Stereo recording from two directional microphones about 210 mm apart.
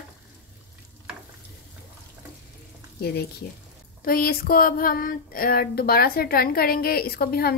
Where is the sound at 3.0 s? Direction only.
50° left (ahead or behind).